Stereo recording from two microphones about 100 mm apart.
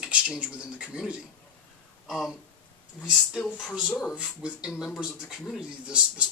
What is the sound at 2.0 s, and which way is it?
Speech, centre (ahead or behind).